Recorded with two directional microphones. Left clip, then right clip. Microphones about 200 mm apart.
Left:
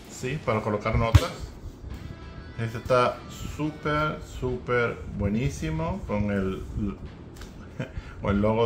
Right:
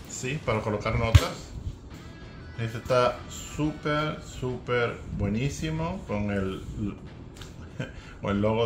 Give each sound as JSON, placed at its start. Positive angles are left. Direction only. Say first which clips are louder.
{"t": 0.2, "sound": "speech", "louder": "left 1 dB", "side_deg": 10}
{"t": 2.6, "sound": "speech", "louder": "left 1 dB", "side_deg": 10}
{"t": 7.7, "sound": "a sound", "louder": "left 1 dB", "side_deg": 10}